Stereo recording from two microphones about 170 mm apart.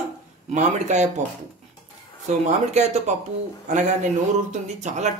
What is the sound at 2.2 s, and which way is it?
Speech, 45° right (ahead or behind).